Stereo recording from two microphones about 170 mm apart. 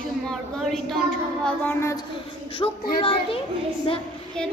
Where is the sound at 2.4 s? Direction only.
30° left (ahead or behind).